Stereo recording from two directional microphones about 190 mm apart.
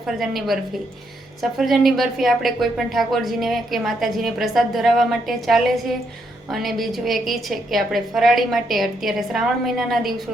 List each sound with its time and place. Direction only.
0.2 s a woman's voice: centre (ahead or behind)